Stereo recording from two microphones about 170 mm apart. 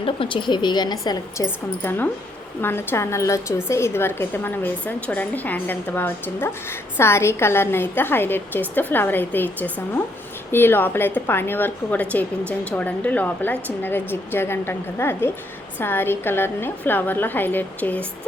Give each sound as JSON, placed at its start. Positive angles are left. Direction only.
{"t": 0.0, "sound": "a woman's voice", "side_deg": 30}
{"t": 1.8, "sound": "a woman's voice", "side_deg": 10}